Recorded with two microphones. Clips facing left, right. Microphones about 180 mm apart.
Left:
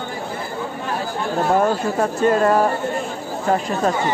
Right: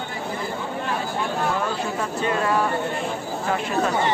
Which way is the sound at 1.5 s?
45° left (ahead or behind).